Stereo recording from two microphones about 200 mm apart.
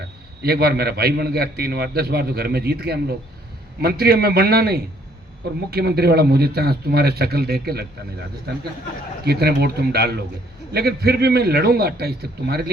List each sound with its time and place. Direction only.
0.4 s a man's voice: 50° right (ahead or behind)
9.2 s a man's voice: 50° right (ahead or behind)